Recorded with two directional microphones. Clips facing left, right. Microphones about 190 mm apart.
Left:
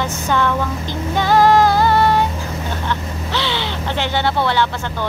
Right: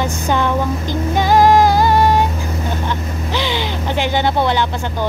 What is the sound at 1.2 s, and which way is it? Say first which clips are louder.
Music: right 1 dB; 15° right (ahead or behind).